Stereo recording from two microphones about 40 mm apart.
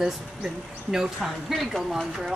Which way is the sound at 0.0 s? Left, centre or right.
Centre.